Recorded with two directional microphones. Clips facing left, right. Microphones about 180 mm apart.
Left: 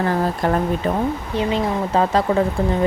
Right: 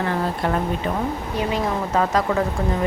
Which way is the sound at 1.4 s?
25° left (ahead or behind).